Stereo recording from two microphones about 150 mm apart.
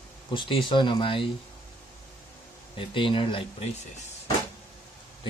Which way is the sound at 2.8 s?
35° left (ahead or behind).